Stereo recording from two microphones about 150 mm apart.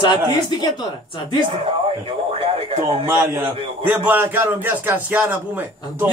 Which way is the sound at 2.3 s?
40° right (ahead or behind).